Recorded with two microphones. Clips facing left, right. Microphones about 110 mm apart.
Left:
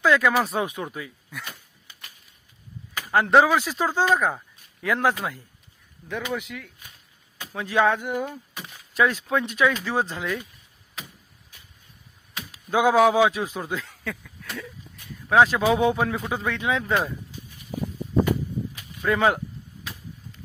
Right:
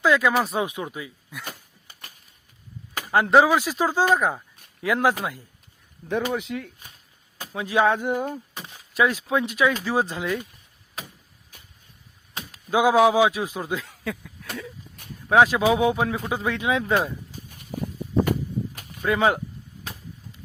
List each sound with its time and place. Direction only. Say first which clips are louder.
0.0 s speech: even; 10° right (ahead or behind)
1.5 s a sound: right 3 dB; 45° right (ahead or behind)
3.1 s a man's voice: right 1 dB; 15° right (ahead or behind)
6.1 s speech: right 4 dB; 30° right (ahead or behind)
7.5 s a man's voice: right 1 dB; 15° right (ahead or behind)
12.7 s a man's voice: right 1 dB; 10° right (ahead or behind)
15.4 s a man's voice: right 1 dB; 15° right (ahead or behind)
16.9 s speech: right 2 dB; 40° right (ahead or behind)
18.3 s a sound: even; 50° right (ahead or behind)
19.0 s a man's voice: even; 20° right (ahead or behind)